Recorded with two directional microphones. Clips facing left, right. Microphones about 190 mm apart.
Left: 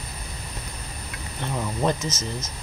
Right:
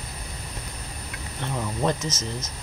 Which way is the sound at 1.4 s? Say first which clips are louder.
Left 1 dB; 10° left (ahead or behind).